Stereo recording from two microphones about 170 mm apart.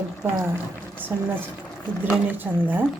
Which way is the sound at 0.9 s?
10° right (ahead or behind).